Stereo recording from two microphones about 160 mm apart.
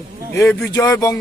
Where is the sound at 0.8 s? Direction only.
20° left (ahead or behind).